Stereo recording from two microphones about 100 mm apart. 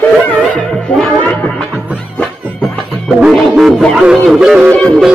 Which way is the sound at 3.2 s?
5° right (ahead or behind).